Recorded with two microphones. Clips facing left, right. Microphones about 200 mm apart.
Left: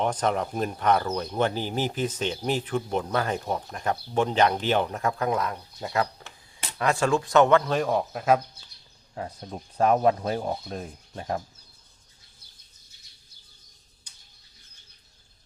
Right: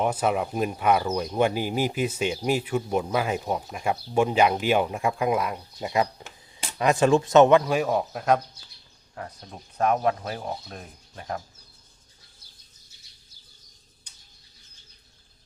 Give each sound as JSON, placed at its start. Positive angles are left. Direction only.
{"t": 0.0, "sound": "speech", "side_deg": -10}
{"t": 9.1, "sound": "speech", "side_deg": 25}